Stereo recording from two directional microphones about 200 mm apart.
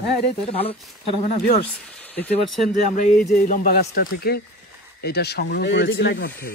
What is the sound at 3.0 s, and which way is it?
Speech, 40° left (ahead or behind).